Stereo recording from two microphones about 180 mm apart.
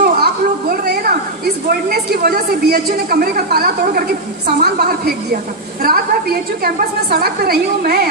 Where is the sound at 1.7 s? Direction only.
60° right (ahead or behind).